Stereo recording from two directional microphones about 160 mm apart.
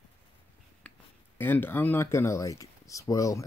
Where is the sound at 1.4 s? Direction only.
15° left (ahead or behind).